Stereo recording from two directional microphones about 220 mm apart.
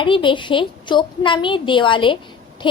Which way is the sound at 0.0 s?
20° left (ahead or behind).